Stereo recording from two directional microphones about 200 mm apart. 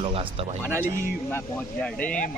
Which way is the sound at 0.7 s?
10° right (ahead or behind).